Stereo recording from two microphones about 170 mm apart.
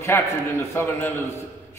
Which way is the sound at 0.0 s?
15° left (ahead or behind).